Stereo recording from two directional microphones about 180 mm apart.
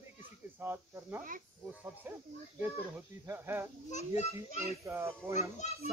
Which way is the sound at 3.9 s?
35° left (ahead or behind).